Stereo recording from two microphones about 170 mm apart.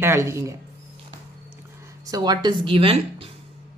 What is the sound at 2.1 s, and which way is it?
Speech, 25° right (ahead or behind).